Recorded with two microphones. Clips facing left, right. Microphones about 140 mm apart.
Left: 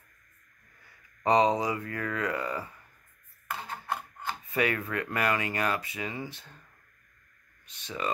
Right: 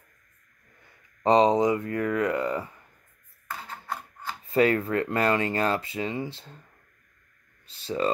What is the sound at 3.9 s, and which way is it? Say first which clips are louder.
Rub: left 1 dB; 20° left (ahead or behind).